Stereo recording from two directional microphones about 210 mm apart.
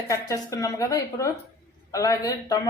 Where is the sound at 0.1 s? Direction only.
15° left (ahead or behind).